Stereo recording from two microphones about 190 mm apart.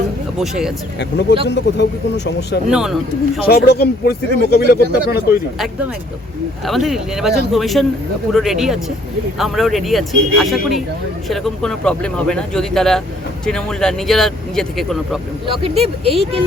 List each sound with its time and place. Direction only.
0.3 s speech: centre (ahead or behind)
1.5 s speech: 65° left (ahead or behind)
2.6 s speech: centre (ahead or behind)
3.4 s speech: 55° left (ahead or behind)
6.7 s speech: centre (ahead or behind)
15.4 s speech: 30° right (ahead or behind)